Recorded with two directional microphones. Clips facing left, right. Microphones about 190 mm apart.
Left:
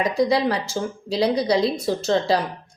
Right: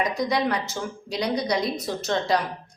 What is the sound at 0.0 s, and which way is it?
A woman's voice, 30° left (ahead or behind).